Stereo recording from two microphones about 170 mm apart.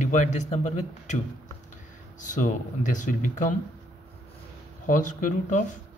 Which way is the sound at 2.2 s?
45° left (ahead or behind).